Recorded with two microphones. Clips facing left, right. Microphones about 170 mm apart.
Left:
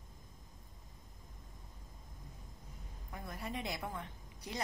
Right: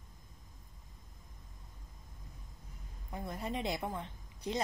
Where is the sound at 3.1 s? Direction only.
25° right (ahead or behind).